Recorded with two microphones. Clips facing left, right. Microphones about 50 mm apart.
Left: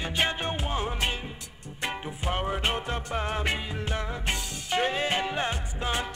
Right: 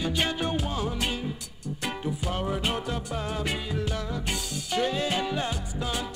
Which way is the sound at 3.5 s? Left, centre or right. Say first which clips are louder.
Even; left.